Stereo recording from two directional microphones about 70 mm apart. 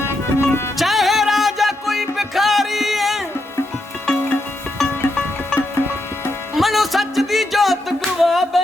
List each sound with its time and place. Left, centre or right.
0.0 s music: left
0.8 s music: centre
4.1 s music: left
4.8 s music: centre
6.5 s music: centre